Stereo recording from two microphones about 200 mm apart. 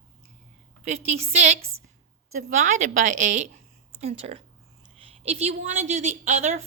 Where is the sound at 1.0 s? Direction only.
30° right (ahead or behind).